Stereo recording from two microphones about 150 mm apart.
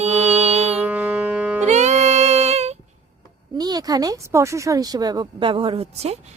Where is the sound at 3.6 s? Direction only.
25° right (ahead or behind).